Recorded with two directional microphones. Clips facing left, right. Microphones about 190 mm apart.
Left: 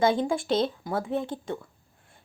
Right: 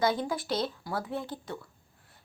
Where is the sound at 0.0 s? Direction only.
25° left (ahead or behind).